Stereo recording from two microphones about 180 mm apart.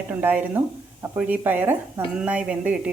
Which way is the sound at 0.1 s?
10° right (ahead or behind).